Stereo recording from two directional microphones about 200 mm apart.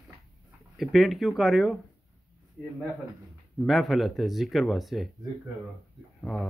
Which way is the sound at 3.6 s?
Centre (ahead or behind).